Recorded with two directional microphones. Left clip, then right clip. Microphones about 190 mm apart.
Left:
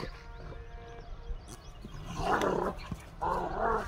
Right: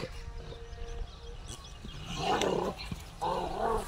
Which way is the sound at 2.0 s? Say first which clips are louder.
Right 1 dB; 35° left (ahead or behind).